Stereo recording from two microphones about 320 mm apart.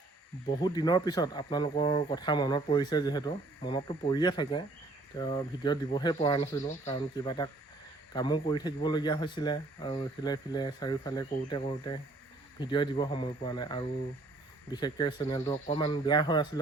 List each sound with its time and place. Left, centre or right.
0.4 s speech: centre